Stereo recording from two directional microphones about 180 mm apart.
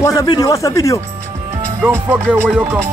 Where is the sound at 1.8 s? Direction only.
10° right (ahead or behind).